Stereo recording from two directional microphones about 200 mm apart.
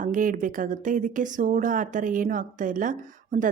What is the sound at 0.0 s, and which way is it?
Speech, 40° right (ahead or behind).